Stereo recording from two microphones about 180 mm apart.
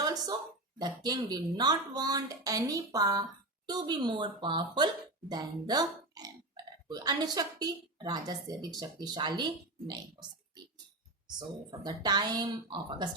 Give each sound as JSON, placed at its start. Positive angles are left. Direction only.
{"t": 0.0, "sound": "a sound", "side_deg": -20}
{"t": 0.8, "sound": "a woman's voice", "side_deg": -25}
{"t": 12.0, "sound": "a woman's voice", "side_deg": -20}